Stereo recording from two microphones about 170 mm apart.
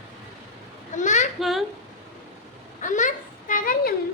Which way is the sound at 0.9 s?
45° left (ahead or behind).